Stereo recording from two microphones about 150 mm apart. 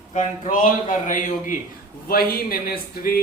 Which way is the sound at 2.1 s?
85° left.